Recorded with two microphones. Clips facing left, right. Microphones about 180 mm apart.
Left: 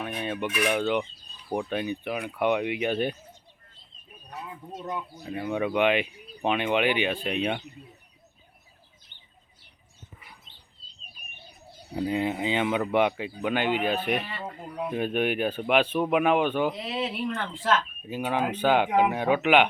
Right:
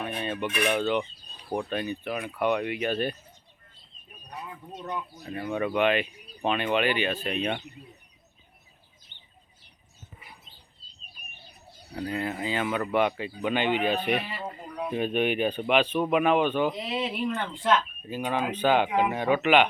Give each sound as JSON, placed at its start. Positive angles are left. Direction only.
{"t": 0.0, "sound": "cutlery", "side_deg": 10}
{"t": 0.6, "sound": "speech", "side_deg": 10}
{"t": 4.7, "sound": "speech", "side_deg": 5}
{"t": 11.9, "sound": "speech", "side_deg": 20}
{"t": 14.2, "sound": "speech", "side_deg": -10}
{"t": 14.8, "sound": "speech", "side_deg": 5}